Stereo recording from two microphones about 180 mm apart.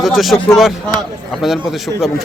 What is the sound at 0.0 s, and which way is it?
Speech, centre (ahead or behind).